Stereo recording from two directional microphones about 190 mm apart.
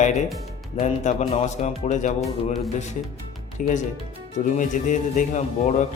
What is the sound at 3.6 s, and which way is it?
A man's voice, 45° left (ahead or behind).